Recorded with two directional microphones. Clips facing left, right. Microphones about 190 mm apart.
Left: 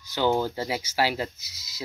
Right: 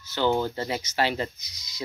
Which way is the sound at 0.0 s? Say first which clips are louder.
Even; 10° left (ahead or behind).